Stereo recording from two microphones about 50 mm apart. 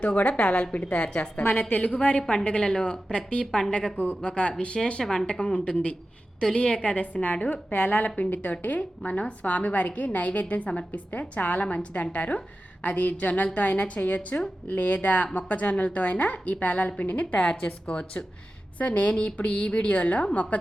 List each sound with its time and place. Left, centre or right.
0.0 s a woman's voice: left